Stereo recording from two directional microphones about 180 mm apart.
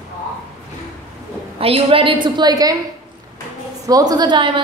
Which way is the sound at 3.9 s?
20° right (ahead or behind).